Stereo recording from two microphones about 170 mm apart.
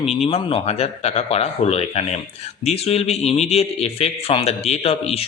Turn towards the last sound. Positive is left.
turn(degrees=35)  # may be behind; listen again after turning